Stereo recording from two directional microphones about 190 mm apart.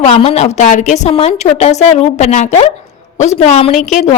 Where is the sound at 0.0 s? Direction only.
30° left (ahead or behind).